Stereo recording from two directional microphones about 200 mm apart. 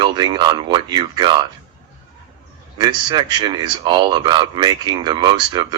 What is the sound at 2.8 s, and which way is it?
Speech, 20° right (ahead or behind).